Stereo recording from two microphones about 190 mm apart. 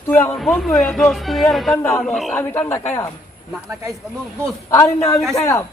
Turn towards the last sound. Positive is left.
turn(degrees=15)  # may be behind; listen again after turning